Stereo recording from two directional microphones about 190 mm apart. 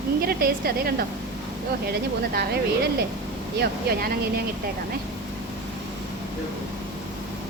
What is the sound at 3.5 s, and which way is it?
Speech, 55° right (ahead or behind).